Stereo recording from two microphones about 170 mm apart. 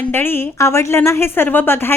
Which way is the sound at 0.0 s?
10° left (ahead or behind).